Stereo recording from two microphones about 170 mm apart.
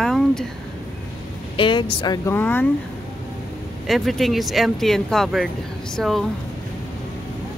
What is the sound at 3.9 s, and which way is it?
Speech, centre (ahead or behind).